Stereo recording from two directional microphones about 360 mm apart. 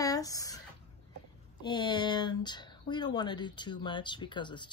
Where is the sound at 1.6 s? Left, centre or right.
Centre.